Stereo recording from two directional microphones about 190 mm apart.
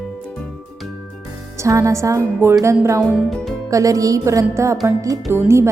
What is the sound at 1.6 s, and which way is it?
A woman's voice, 15° right (ahead or behind).